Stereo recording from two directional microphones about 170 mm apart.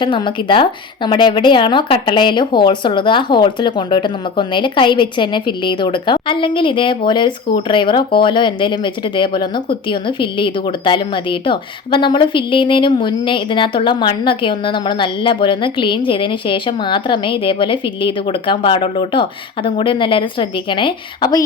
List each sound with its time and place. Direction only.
0.0 s speech: 30° left (ahead or behind)